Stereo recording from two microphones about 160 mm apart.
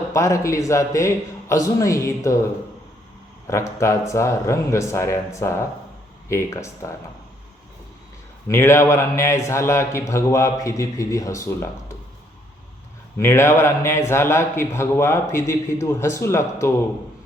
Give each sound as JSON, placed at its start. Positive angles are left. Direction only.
{"t": 0.1, "sound": "a man's voice", "side_deg": 20}
{"t": 3.4, "sound": "speech", "side_deg": 20}
{"t": 8.4, "sound": "speech", "side_deg": 15}
{"t": 13.1, "sound": "speech", "side_deg": 15}